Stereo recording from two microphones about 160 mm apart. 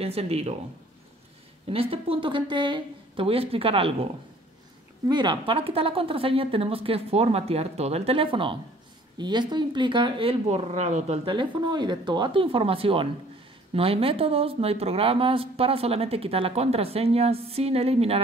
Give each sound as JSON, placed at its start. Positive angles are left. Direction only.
{"t": 0.0, "sound": "speech", "side_deg": -40}
{"t": 1.7, "sound": "speech", "side_deg": -35}
{"t": 11.2, "sound": "speech", "side_deg": -30}